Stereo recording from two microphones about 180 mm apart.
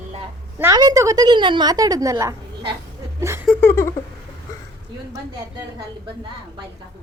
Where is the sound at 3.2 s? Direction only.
15° right (ahead or behind).